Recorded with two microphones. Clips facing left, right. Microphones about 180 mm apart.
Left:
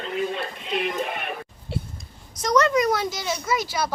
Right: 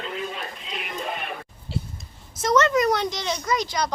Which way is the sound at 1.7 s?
55° left (ahead or behind).